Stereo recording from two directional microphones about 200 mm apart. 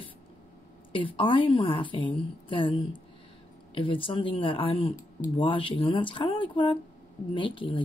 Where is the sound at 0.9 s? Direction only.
25° left (ahead or behind).